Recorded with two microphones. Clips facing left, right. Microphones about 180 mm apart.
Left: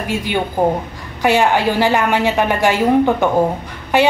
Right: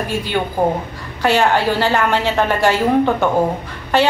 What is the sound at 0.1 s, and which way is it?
A woman's voice, 15° left (ahead or behind).